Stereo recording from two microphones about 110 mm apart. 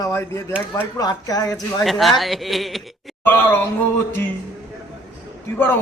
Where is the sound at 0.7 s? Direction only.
35° left (ahead or behind).